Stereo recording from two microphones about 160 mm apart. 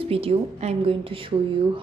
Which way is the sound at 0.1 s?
40° right (ahead or behind).